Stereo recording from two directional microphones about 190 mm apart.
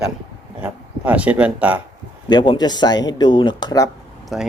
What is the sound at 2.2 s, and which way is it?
Speech, 25° left (ahead or behind).